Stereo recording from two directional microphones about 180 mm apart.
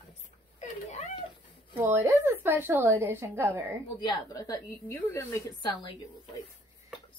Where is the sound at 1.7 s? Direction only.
15° right (ahead or behind).